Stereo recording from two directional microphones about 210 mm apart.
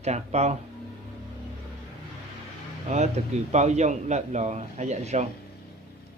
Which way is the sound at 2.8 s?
30° right (ahead or behind).